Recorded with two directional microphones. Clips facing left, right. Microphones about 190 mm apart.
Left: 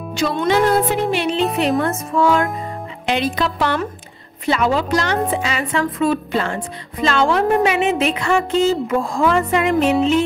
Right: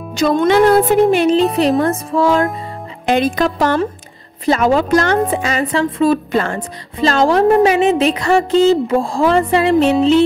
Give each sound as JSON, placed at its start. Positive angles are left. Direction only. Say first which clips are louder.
{"t": 0.1, "sound": "speech", "louder": "right 5 dB", "side_deg": -45}
{"t": 1.6, "sound": "a woman's voice", "louder": "right 4 dB", "side_deg": -35}
{"t": 3.1, "sound": "speech", "louder": "right 5 dB", "side_deg": -50}
{"t": 6.3, "sound": "speech", "louder": "right 4 dB", "side_deg": -50}
{"t": 7.0, "sound": "a woman's voice", "louder": "right 4 dB", "side_deg": -40}